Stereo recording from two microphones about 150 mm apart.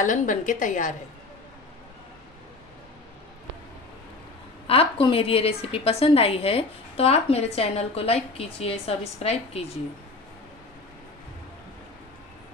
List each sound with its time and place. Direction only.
0.0 s a woman's voice: 60° left (ahead or behind)
4.6 s a woman's voice: 40° left (ahead or behind)